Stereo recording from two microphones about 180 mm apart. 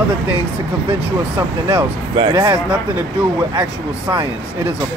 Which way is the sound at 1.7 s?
30° right (ahead or behind).